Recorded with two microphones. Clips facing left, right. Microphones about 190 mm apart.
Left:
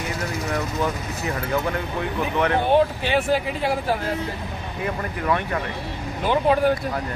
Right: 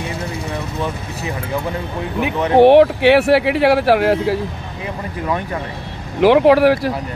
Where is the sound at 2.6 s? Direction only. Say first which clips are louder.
Right 15 dB; 75° right (ahead or behind).